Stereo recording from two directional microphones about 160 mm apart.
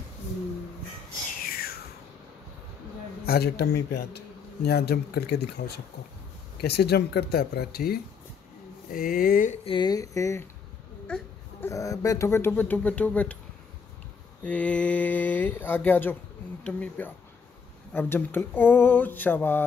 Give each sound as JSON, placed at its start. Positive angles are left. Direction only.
{"t": 1.4, "sound": "a sound", "side_deg": 70}
{"t": 3.3, "sound": "speech", "side_deg": 85}
{"t": 8.9, "sound": "speech", "side_deg": 60}
{"t": 9.7, "sound": "speech", "side_deg": 25}
{"t": 11.1, "sound": "a sound", "side_deg": 5}
{"t": 11.7, "sound": "speech", "side_deg": 20}
{"t": 14.4, "sound": "speech", "side_deg": 10}